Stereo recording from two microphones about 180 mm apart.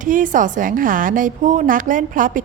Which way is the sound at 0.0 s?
45° right (ahead or behind).